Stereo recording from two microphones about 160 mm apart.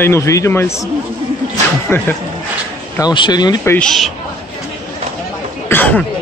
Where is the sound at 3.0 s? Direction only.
30° left (ahead or behind).